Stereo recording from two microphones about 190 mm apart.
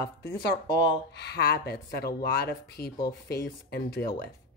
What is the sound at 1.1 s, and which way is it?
Speech, 60° left (ahead or behind).